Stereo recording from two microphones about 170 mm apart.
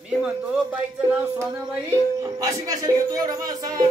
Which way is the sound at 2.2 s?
20° right (ahead or behind).